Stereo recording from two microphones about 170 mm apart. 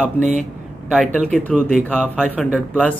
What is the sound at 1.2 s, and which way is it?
Speech, centre (ahead or behind).